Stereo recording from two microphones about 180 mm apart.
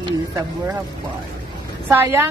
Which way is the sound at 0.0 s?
15° right (ahead or behind).